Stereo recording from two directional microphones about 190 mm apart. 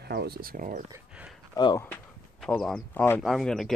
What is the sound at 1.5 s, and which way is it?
Speech, 20° left (ahead or behind).